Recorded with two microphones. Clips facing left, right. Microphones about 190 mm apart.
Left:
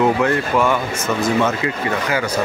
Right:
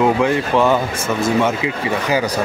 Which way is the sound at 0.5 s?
20° right (ahead or behind).